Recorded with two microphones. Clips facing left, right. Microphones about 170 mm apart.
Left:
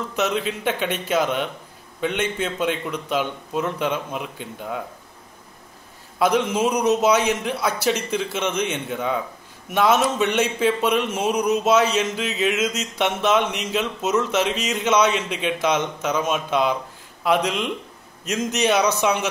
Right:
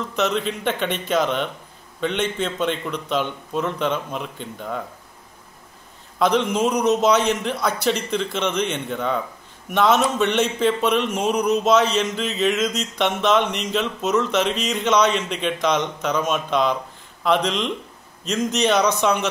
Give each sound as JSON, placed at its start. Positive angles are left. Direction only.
{"t": 0.1, "sound": "a man's voice", "side_deg": 5}
{"t": 6.1, "sound": "a man's voice", "side_deg": 5}